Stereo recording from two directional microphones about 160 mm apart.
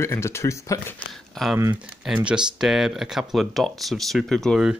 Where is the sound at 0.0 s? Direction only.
15° left (ahead or behind).